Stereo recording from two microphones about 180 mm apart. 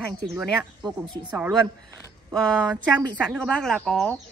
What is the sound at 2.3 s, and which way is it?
Speech, 5° left (ahead or behind).